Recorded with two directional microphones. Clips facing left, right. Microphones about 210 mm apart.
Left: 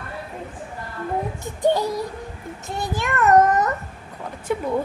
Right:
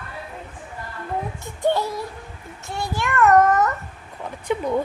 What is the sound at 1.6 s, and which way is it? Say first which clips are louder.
A woman's voice: left 2 dB; 15° left (ahead or behind).